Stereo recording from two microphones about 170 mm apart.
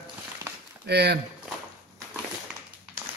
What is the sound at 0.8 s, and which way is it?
Speech, 75° right (ahead or behind).